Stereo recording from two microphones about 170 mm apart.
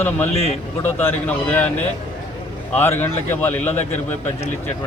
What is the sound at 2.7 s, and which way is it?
A man's voice, 10° left (ahead or behind).